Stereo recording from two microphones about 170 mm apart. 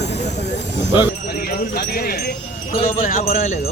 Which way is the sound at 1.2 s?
65° left (ahead or behind).